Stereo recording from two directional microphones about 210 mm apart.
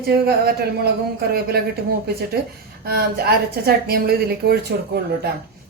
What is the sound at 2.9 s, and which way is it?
A woman's voice, 50° right (ahead or behind).